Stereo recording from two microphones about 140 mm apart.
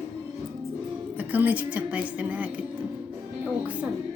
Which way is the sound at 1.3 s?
10° right (ahead or behind).